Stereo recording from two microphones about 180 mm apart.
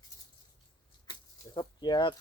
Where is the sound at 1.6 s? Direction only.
25° left (ahead or behind).